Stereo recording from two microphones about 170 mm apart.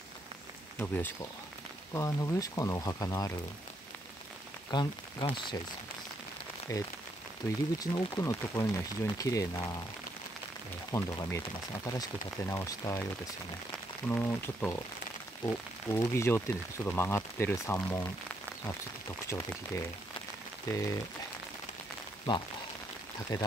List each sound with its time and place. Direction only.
0.7 s speech: 10° left (ahead or behind)
4.7 s speech: 25° left (ahead or behind)
6.7 s speech: 20° left (ahead or behind)
10.9 s speech: 20° left (ahead or behind)
14.0 s speech: 15° left (ahead or behind)
19.2 s speech: 15° left (ahead or behind)
23.3 s speech: 20° left (ahead or behind)